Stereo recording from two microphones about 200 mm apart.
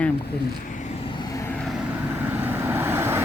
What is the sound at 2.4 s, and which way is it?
Vehicle, 10° right (ahead or behind).